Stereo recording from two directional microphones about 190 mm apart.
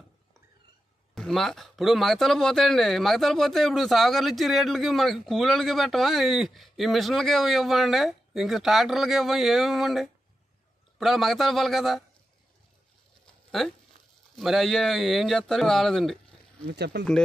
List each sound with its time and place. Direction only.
1.1 s speech: centre (ahead or behind)
13.5 s speech: centre (ahead or behind)
16.7 s speech: 60° right (ahead or behind)